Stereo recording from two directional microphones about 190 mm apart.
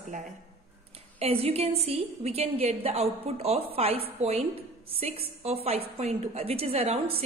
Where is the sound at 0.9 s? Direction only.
30° right (ahead or behind).